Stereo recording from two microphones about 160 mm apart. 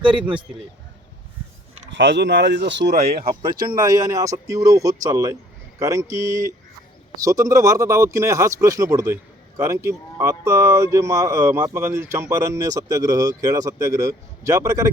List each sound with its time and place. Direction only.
0.0 s a man's voice: 30° right (ahead or behind)
1.9 s speech: 90° right; by 3.7 s 65° right (ahead or behind)
3.7 s speech: 25° right (ahead or behind)